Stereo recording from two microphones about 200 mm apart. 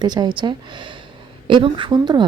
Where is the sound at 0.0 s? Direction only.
20° right (ahead or behind).